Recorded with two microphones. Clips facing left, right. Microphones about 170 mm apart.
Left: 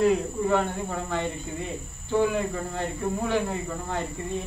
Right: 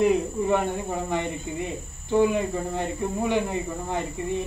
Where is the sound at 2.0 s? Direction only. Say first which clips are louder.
Right 3 dB; 15° right (ahead or behind).